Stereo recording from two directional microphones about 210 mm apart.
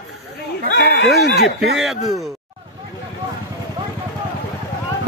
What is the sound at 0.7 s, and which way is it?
Speech, 50° left (ahead or behind).